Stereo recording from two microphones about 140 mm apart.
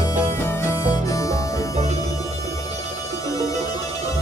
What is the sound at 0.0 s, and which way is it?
Harmonica, 20° left (ahead or behind).